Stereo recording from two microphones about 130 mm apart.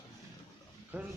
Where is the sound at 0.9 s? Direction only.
15° right (ahead or behind).